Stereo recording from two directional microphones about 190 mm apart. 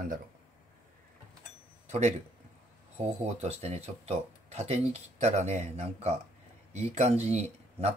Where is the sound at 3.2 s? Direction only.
35° right (ahead or behind).